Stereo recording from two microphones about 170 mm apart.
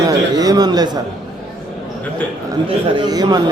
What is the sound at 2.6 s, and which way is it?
Speech, 25° right (ahead or behind).